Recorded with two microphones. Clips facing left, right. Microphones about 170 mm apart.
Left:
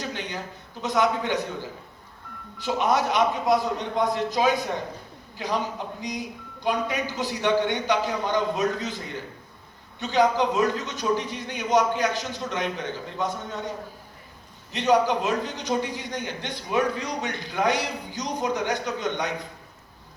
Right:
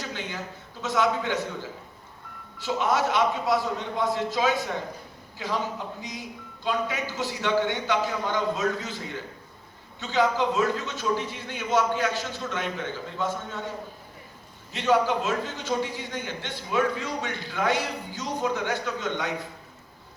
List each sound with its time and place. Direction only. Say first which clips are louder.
0.0 s a sound: left 2 dB; 15° left (ahead or behind)
0.8 s a man's voice: left 1 dB; 15° left (ahead or behind)
2.6 s a man's voice: left 2 dB; 15° left (ahead or behind)
14.8 s a man's voice: left 2 dB; 15° left (ahead or behind)